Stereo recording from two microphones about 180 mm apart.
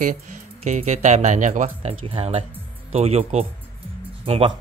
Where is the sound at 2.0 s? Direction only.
30° right (ahead or behind).